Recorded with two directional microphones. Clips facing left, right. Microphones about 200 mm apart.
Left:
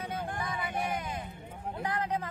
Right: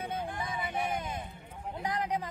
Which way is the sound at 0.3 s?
50° left (ahead or behind).